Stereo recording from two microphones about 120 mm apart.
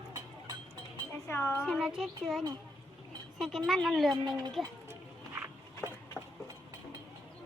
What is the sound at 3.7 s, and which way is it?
Speech, centre (ahead or behind).